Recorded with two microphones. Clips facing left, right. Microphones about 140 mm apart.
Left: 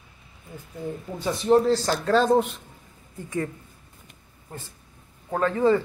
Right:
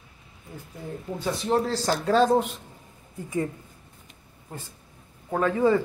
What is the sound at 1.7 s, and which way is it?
Speech, 5° right (ahead or behind).